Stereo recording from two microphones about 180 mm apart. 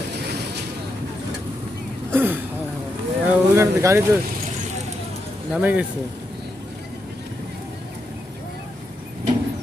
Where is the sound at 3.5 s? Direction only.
15° right (ahead or behind).